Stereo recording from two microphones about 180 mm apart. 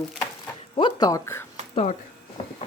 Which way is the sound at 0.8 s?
25° left (ahead or behind).